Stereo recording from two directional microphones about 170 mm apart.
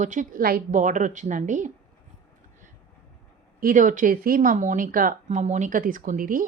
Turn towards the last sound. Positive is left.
turn(degrees=-55)  # may be behind; listen again after turning